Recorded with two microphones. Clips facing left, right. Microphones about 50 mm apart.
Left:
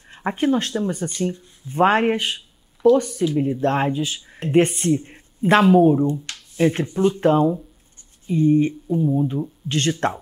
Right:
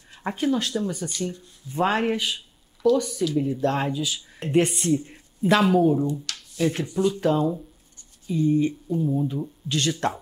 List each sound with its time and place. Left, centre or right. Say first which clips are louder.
0.1 s speech: left 4 dB; left
8.9 s speech: left 6 dB; centre
9.7 s speech: left 3 dB; left